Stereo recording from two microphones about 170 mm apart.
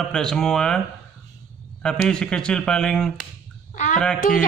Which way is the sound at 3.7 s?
50° left (ahead or behind).